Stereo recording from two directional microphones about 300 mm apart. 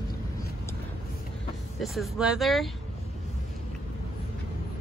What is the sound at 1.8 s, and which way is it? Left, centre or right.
Speech, centre.